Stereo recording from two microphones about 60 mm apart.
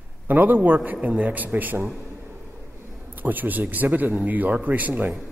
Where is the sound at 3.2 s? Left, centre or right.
Right.